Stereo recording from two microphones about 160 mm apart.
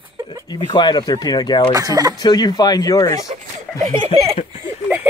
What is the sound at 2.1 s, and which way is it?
Speech, 25° left (ahead or behind).